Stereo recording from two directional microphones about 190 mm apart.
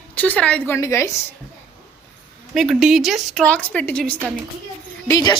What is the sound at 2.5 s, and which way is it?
A woman's voice, centre (ahead or behind).